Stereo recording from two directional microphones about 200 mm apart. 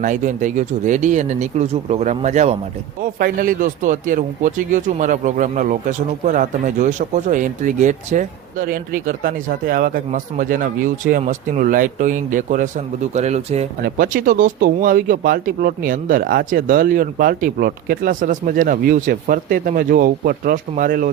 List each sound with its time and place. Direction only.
0.0 s speech: 40° right (ahead or behind)